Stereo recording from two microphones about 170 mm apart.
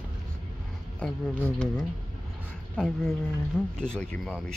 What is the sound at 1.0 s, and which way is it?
Speech, 5° left (ahead or behind).